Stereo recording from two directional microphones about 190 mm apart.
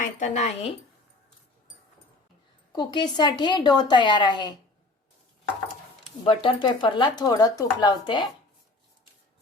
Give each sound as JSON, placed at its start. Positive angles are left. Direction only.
{"t": 0.0, "sound": "speech", "side_deg": 40}
{"t": 2.7, "sound": "speech", "side_deg": 25}
{"t": 6.2, "sound": "speech", "side_deg": 25}